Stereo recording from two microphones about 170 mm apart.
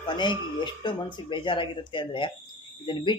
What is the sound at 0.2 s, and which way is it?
Speech, 25° left (ahead or behind).